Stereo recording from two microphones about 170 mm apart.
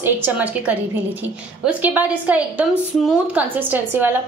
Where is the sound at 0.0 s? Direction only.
10° right (ahead or behind).